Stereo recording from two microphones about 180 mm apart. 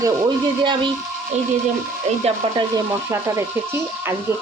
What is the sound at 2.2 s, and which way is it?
Speech, 25° right (ahead or behind).